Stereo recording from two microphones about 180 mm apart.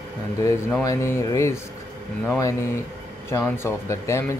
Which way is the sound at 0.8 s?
15° left (ahead or behind).